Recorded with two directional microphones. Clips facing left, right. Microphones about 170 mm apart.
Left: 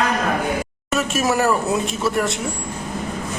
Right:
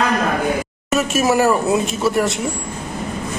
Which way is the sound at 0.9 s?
5° right (ahead or behind).